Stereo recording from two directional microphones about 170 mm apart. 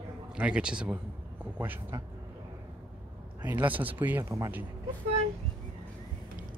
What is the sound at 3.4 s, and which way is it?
A man's voice, 10° right (ahead or behind).